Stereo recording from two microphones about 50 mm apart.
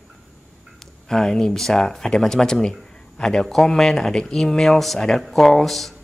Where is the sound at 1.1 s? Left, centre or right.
Centre.